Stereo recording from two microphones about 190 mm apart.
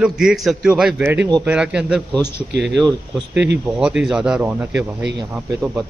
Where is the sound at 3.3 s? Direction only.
65° right (ahead or behind).